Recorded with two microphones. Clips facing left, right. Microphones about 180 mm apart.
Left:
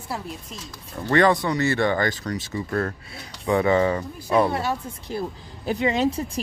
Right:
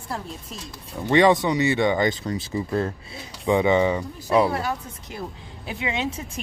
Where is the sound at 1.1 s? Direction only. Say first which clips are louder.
Right 2 dB; 20° right (ahead or behind).